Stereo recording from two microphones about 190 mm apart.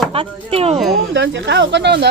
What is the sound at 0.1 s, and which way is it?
Speech, 30° right (ahead or behind).